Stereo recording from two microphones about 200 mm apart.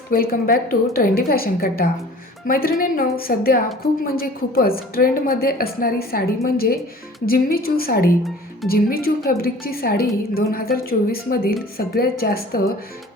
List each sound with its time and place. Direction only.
0.1 s a woman's voice: 45° left (ahead or behind)